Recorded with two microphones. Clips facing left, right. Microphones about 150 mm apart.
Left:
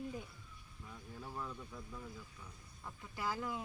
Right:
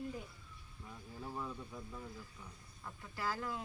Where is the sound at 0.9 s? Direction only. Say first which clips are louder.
Right 2 dB; 10° right (ahead or behind).